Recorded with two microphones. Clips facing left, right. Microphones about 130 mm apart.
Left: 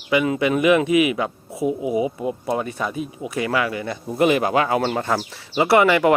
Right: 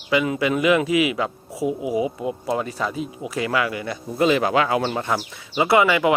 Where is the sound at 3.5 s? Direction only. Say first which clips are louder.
Left 1 dB; 30° left (ahead or behind).